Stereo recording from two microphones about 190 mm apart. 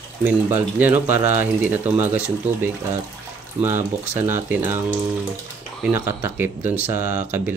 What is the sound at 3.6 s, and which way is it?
Speech, 30° right (ahead or behind).